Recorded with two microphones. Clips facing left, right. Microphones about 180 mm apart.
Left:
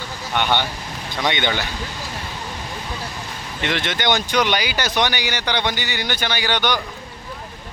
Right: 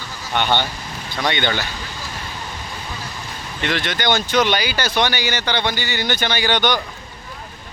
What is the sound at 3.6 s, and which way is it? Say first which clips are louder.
Speech: right 1 dB; 20° left (ahead or behind).